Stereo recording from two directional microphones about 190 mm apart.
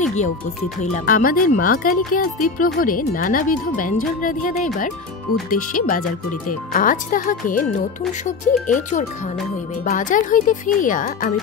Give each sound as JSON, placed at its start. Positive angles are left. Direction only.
{"t": 0.0, "sound": "music", "side_deg": 40}
{"t": 1.0, "sound": "speech", "side_deg": 50}
{"t": 9.8, "sound": "speech", "side_deg": 45}